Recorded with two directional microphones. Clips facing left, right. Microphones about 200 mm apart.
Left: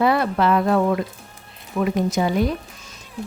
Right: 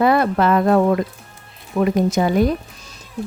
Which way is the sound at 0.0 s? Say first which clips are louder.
Right 3 dB; 50° right (ahead or behind).